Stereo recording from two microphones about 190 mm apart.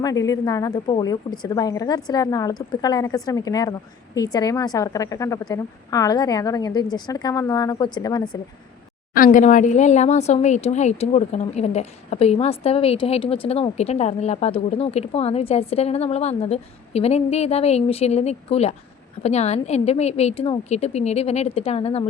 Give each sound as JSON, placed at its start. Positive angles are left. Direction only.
{"t": 0.0, "sound": "a woman's voice", "side_deg": 20}
{"t": 9.1, "sound": "speech", "side_deg": 45}